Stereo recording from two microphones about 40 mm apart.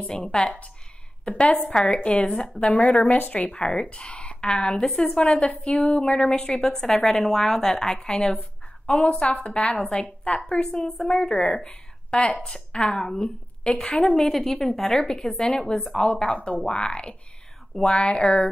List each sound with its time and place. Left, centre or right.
0.3 s a woman's voice: centre
1.4 s a woman's voice: left
3.5 s a woman's voice: left